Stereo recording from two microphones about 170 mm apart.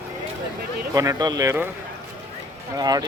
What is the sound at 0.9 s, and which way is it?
Speech, 20° right (ahead or behind).